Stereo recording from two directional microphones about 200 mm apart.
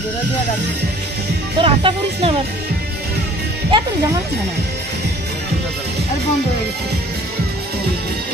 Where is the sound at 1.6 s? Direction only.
25° right (ahead or behind).